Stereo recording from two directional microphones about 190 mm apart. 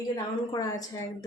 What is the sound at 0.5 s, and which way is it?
Speech, 20° left (ahead or behind).